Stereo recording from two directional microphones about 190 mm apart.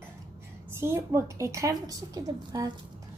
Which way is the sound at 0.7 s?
15° right (ahead or behind).